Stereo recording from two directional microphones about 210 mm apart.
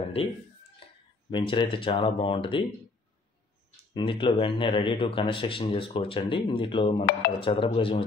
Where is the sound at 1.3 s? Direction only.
25° left (ahead or behind).